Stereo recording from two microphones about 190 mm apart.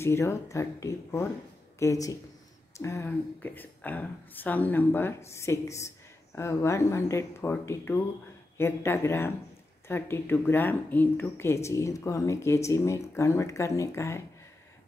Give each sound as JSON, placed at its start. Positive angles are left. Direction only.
{"t": 0.0, "sound": "speech", "side_deg": 15}